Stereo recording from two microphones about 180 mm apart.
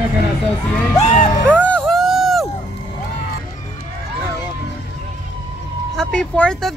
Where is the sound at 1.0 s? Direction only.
45° left (ahead or behind).